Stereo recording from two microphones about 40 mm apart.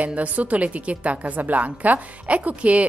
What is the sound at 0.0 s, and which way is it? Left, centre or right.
Speech, right.